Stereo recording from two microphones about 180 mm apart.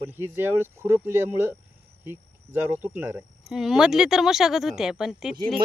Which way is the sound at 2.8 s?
10° right (ahead or behind).